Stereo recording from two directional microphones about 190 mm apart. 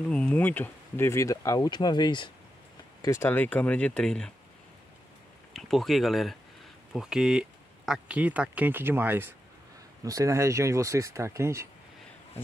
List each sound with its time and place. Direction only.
0.1 s speech: 5° left (ahead or behind)
5.5 s speech: centre (ahead or behind); by 11.7 s 15° right (ahead or behind)